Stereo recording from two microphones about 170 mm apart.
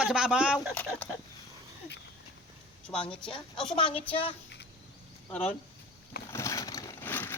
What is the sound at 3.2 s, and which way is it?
A woman's voice, 30° left (ahead or behind).